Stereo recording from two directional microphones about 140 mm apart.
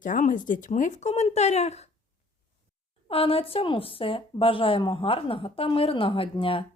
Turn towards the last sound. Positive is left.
turn(degrees=40)  # may be behind; listen again after turning